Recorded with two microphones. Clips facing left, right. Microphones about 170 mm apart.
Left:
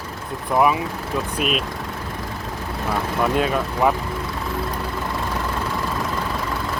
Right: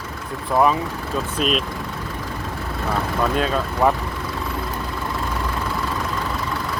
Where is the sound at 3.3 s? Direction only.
20° left (ahead or behind).